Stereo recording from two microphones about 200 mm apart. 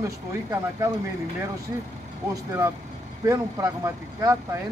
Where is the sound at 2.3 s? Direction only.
15° right (ahead or behind).